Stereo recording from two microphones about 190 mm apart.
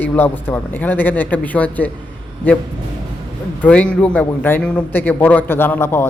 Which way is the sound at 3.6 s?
5° left (ahead or behind).